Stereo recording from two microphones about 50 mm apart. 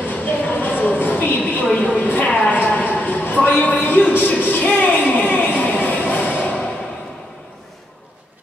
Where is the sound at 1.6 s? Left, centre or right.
Left.